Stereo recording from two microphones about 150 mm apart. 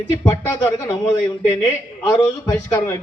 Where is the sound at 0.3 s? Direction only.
15° left (ahead or behind).